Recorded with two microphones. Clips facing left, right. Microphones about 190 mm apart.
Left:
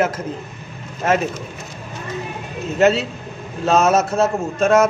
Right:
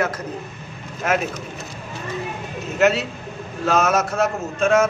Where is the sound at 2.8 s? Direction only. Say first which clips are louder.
Left 3 dB; 30° left (ahead or behind).